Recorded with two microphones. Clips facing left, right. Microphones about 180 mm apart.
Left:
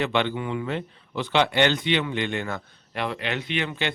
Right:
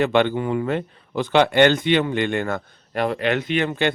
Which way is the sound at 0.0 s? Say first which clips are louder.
Right 6 dB; 50° right (ahead or behind).